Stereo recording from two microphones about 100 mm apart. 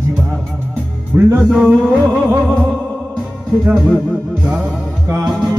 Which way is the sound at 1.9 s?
20° right (ahead or behind).